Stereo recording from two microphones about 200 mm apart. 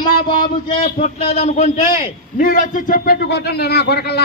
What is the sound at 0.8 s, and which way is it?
A man's voice, 35° left (ahead or behind).